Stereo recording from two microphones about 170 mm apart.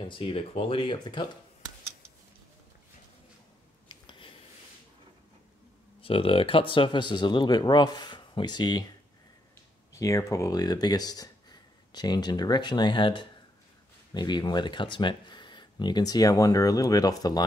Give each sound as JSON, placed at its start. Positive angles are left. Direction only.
{"t": 0.0, "sound": "speech", "side_deg": 30}
{"t": 3.9, "sound": "a sound", "side_deg": 30}
{"t": 5.9, "sound": "speech", "side_deg": 30}
{"t": 9.9, "sound": "speech", "side_deg": 20}